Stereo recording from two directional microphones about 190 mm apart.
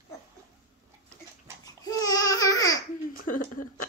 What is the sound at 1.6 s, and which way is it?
Babbling, 20° left (ahead or behind).